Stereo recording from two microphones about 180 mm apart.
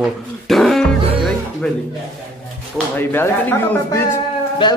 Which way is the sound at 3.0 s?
10° left (ahead or behind).